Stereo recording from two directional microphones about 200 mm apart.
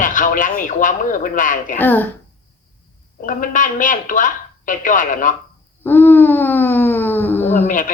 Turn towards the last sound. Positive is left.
turn(degrees=40)  # may be behind; listen again after turning